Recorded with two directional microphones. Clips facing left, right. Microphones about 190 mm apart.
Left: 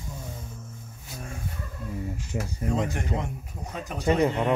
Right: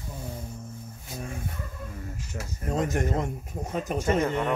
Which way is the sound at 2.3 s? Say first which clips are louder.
Left 7 dB; 15° left (ahead or behind).